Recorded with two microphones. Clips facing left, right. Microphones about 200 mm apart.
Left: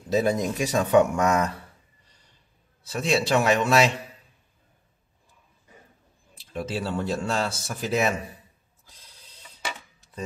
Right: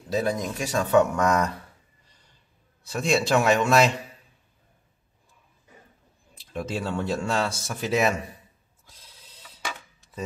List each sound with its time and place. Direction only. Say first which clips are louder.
0.1 s speech: left 3 dB; 20° left (ahead or behind); by 1.5 s 5° left (ahead or behind)
2.9 s speech: right 1 dB; centre (ahead or behind)
6.5 s speech: even; centre (ahead or behind)
8.8 s mechanisms: right 1 dB; centre (ahead or behind)